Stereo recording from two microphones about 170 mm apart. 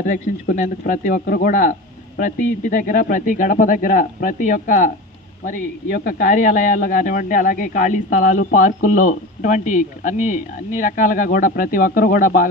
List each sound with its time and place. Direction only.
0.0 s speech: 50° left (ahead or behind)